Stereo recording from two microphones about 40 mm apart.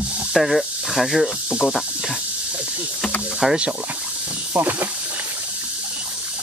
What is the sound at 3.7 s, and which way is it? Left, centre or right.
Speech, right.